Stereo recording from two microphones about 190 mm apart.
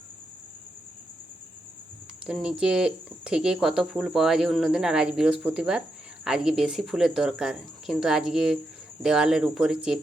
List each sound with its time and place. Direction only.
2.2 s speech: 5° right (ahead or behind)